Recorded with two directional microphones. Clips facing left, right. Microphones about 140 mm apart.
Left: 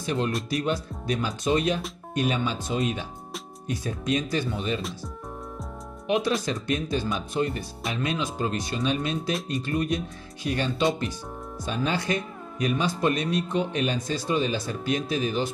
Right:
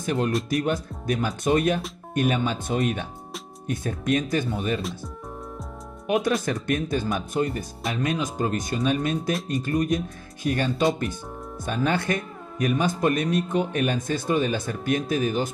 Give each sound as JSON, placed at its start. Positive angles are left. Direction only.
{"t": 0.0, "sound": "speech", "side_deg": -50}
{"t": 6.0, "sound": "speech", "side_deg": -50}